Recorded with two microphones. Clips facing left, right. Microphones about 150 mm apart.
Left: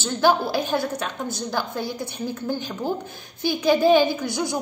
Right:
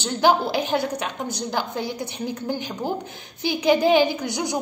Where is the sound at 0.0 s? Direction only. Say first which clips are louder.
Right 1 dB; 20° right (ahead or behind).